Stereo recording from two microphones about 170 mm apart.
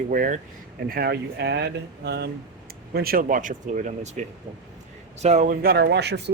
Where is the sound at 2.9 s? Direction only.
60° right (ahead or behind); by 5.5 s 40° right (ahead or behind).